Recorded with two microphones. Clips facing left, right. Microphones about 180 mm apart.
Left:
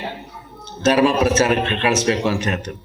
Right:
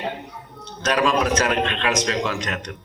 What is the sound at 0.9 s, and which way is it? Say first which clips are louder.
Speech: left 5 dB; 30° left (ahead or behind).